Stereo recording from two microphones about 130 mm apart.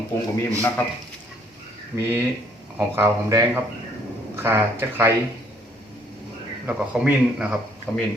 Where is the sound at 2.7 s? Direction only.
20° right (ahead or behind).